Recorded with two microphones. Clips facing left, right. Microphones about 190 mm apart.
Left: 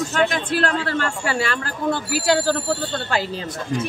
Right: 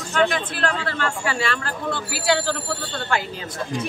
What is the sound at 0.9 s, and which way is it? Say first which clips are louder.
Speech: left 2 dB; 40° left (ahead or behind).